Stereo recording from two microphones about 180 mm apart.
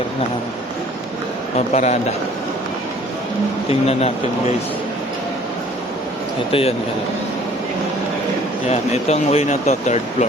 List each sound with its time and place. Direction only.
1.5 s speech: 40° left (ahead or behind)
3.7 s speech: 35° left (ahead or behind)
6.5 s speech: 30° left (ahead or behind)
8.6 s speech: 35° left (ahead or behind)